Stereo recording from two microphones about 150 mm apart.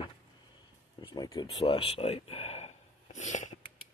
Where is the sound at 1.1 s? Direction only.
25° left (ahead or behind).